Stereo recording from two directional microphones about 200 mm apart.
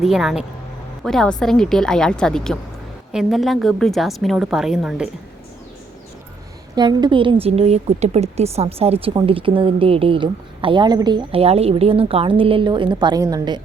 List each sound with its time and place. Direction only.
0.0 s a woman's voice: centre (ahead or behind)
6.7 s a woman's voice: 20° right (ahead or behind)